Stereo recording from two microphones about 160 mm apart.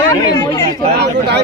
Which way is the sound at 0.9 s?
90° right.